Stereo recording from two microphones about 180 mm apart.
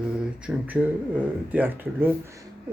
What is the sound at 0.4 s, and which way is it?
Speech, 10° right (ahead or behind).